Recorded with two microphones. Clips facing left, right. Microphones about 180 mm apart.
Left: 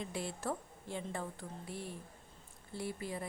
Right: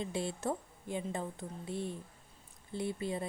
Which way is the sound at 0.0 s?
25° right (ahead or behind).